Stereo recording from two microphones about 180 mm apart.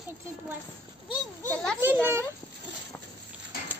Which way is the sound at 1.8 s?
10° right (ahead or behind).